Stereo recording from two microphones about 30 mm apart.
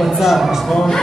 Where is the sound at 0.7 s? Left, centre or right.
Left.